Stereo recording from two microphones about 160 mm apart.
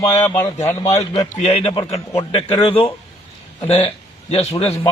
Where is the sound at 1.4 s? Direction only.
40° left (ahead or behind).